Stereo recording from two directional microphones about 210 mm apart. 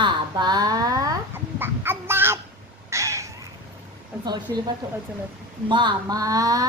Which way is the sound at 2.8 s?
15° right (ahead or behind).